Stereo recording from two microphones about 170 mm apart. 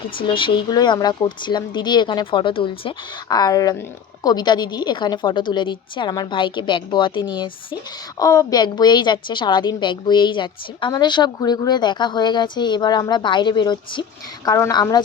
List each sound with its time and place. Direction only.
0.2 s a woman's voice: 30° left (ahead or behind)